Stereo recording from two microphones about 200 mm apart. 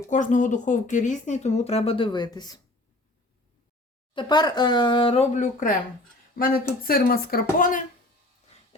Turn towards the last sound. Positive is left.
turn(degrees=40)  # may be behind; listen again after turning